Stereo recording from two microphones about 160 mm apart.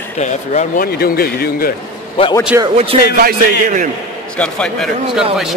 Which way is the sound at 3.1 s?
60° right (ahead or behind).